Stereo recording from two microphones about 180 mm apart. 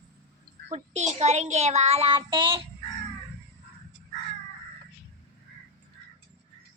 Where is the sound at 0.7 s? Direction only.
40° right (ahead or behind).